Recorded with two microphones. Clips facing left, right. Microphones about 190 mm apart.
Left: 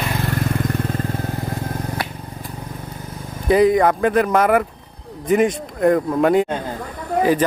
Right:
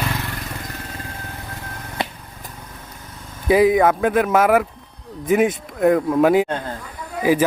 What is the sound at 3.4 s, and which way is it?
Speech, 5° right (ahead or behind).